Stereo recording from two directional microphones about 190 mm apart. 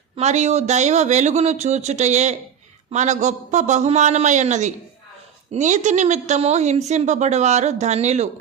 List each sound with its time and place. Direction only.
0.2 s a woman's voice: 35° right (ahead or behind)